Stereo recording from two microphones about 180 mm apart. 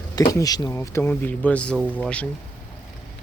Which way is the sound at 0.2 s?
20° left (ahead or behind).